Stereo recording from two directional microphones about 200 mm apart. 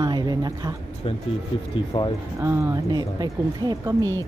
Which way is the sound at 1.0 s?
30° left (ahead or behind).